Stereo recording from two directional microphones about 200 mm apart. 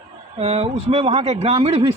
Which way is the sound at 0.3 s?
30° right (ahead or behind).